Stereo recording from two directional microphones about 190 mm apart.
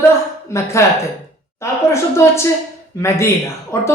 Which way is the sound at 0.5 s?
15° left (ahead or behind).